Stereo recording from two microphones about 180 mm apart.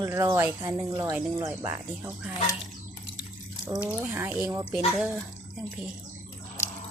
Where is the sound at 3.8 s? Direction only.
10° right (ahead or behind).